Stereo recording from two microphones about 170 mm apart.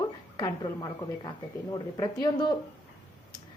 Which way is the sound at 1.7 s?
20° left (ahead or behind).